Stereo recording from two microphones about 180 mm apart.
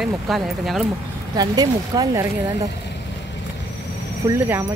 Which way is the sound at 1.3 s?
20° right (ahead or behind).